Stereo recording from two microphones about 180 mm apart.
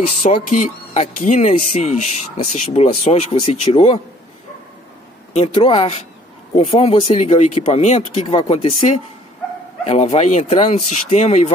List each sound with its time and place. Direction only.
0.2 s speech: 45° left (ahead or behind)
5.3 s speech: 35° left (ahead or behind)